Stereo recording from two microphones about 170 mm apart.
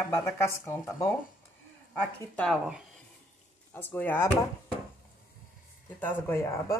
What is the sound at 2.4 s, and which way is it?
Speech, centre (ahead or behind).